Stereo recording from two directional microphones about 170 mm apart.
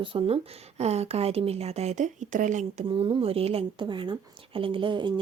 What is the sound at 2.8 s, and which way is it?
Speech, 30° right (ahead or behind).